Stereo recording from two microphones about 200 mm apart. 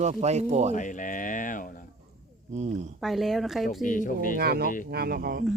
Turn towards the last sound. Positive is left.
turn(degrees=-50)  # may be behind; listen again after turning